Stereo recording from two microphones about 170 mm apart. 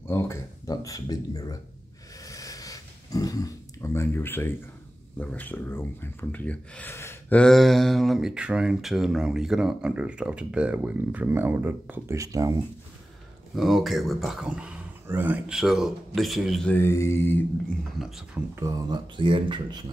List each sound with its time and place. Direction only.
0.1 s speech: 15° left (ahead or behind)
2.2 s a sound: 20° left (ahead or behind)
5.2 s speech: 10° left (ahead or behind); by 12.5 s 20° right (ahead or behind)
13.6 s speech: centre (ahead or behind)
17.9 s speech: centre (ahead or behind)
18.5 s speech: 15° right (ahead or behind)
19.1 s speech: 30° right (ahead or behind)